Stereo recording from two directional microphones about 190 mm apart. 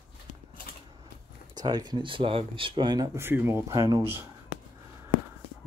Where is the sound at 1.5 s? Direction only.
20° right (ahead or behind).